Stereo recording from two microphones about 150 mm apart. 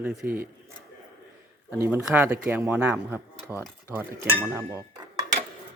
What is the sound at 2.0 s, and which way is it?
Speech, 5° right (ahead or behind).